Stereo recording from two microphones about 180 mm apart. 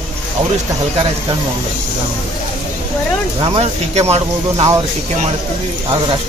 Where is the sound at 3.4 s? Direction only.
30° right (ahead or behind).